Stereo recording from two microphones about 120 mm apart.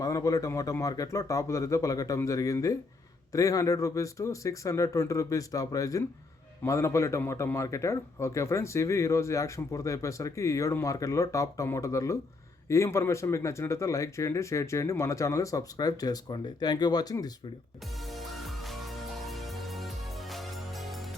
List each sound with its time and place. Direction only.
0.0 s speech: 30° left (ahead or behind)
18.1 s music: centre (ahead or behind)